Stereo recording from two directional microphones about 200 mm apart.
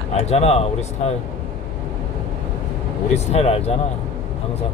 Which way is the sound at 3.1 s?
30° left (ahead or behind).